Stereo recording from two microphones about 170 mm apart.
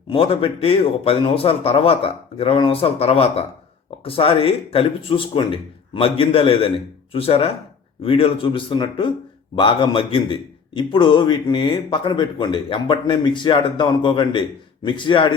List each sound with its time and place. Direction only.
0.1 s speech: 30° left (ahead or behind)